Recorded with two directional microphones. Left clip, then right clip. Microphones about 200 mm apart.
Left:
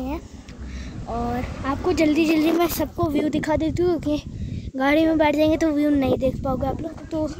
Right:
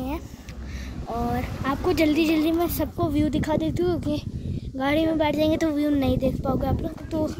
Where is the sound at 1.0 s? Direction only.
Centre (ahead or behind); by 5.5 s 25° left (ahead or behind).